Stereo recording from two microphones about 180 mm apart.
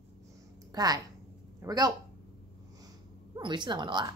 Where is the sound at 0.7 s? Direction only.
20° right (ahead or behind).